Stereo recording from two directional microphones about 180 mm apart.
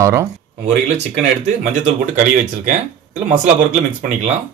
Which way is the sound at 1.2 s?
40° right (ahead or behind).